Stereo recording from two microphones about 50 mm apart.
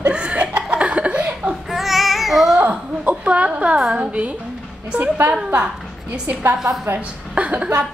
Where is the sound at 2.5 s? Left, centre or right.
Right.